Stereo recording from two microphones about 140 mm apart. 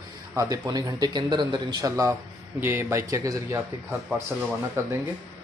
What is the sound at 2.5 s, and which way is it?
Speech, 15° right (ahead or behind).